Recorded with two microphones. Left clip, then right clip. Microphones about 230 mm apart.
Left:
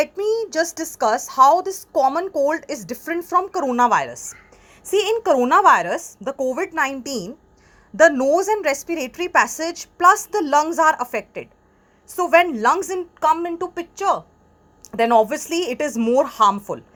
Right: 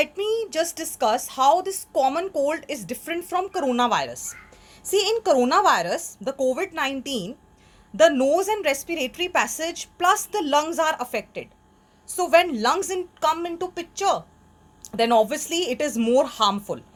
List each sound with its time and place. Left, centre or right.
0.0 s a woman's voice: left